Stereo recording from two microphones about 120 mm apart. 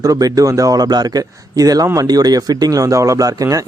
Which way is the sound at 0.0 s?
30° right (ahead or behind).